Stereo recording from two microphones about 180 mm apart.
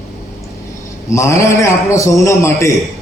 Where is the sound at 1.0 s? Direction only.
15° left (ahead or behind).